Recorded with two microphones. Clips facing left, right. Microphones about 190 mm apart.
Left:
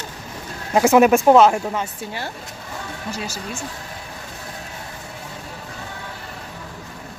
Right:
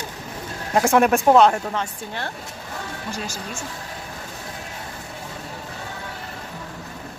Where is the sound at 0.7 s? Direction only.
5° left (ahead or behind).